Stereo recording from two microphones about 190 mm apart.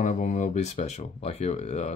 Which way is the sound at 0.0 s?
40° left (ahead or behind).